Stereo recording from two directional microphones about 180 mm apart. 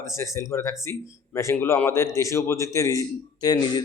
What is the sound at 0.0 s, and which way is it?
Speech, 15° left (ahead or behind).